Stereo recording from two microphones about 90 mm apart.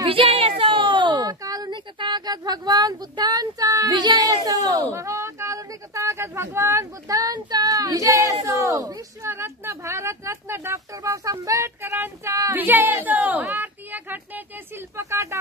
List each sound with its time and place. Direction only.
0.0 s a sound: 90° right; by 1.2 s 60° right (ahead or behind)
1.2 s a sound: 45° right (ahead or behind)
2.0 s speech: 55° right (ahead or behind); by 3.9 s 40° right (ahead or behind)
3.9 s speech: 50° right (ahead or behind)
9.2 s speech: 30° right (ahead or behind)
11.8 s speech: 25° right (ahead or behind)
15.0 s speech: 35° right (ahead or behind)